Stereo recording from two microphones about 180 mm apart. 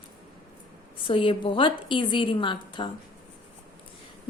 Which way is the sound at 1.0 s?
30° left (ahead or behind).